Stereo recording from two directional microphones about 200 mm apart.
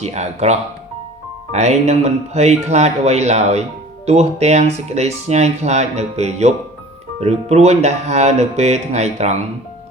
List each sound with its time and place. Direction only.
0.0 s speech: 35° right (ahead or behind)